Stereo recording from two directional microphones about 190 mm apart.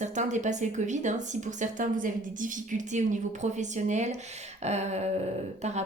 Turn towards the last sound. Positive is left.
turn(degrees=-35)  # may be behind; listen again after turning